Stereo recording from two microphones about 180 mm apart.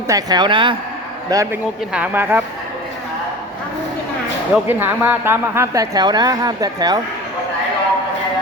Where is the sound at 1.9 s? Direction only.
10° right (ahead or behind).